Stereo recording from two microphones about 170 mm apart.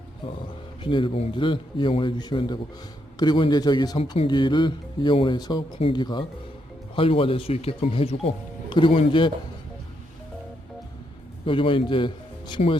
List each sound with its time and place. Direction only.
0.8 s speech: 30° left (ahead or behind)
11.4 s speech: 30° left (ahead or behind)